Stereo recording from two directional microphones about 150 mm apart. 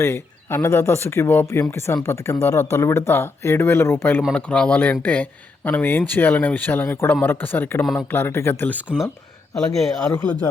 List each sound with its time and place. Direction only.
0.0 s speech: 15° left (ahead or behind)
8.9 s speech: 5° left (ahead or behind)
10.1 s speech: 25° left (ahead or behind)